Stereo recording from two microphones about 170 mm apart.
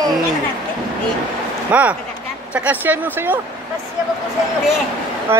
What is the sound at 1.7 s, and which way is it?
Speech, 10° right (ahead or behind).